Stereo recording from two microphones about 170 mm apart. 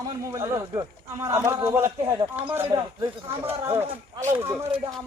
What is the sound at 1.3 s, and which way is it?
Speech, 15° right (ahead or behind).